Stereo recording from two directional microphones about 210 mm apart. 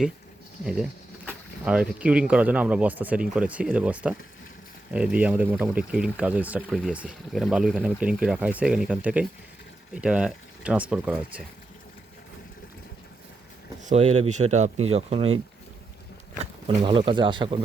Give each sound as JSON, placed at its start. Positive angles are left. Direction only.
{"t": 0.6, "sound": "speech", "side_deg": -5}
{"t": 13.8, "sound": "speech", "side_deg": -30}
{"t": 16.4, "sound": "speech", "side_deg": -25}